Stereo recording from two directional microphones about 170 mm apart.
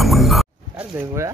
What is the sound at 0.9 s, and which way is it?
Speech, 15° right (ahead or behind).